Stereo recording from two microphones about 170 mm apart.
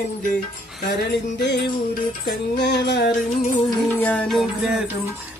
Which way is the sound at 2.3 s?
85° left.